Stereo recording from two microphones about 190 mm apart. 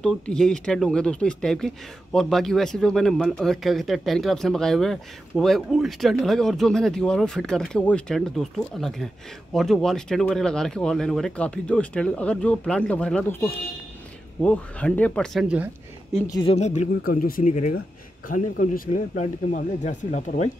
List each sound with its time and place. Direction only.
0.0 s a man's voice: 5° left (ahead or behind)
15.4 s a sound: 5° right (ahead or behind)
16.3 s speech: 20° left (ahead or behind)
16.5 s speech: 35° left (ahead or behind)